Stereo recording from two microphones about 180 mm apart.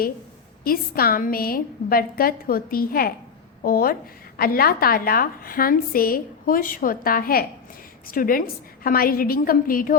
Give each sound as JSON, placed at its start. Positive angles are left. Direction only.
{"t": 0.6, "sound": "a woman's voice", "side_deg": 55}